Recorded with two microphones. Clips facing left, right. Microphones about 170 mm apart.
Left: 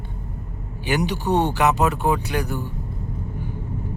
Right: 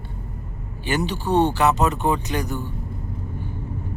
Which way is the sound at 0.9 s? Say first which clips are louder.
Left 1 dB; 15° left (ahead or behind).